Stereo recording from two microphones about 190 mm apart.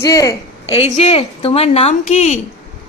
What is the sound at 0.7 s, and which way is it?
A woman's voice, 35° left (ahead or behind).